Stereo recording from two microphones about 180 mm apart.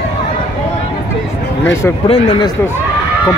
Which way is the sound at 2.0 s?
30° left (ahead or behind).